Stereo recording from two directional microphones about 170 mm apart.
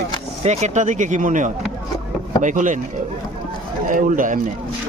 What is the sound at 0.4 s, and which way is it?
Speech, 40° right (ahead or behind).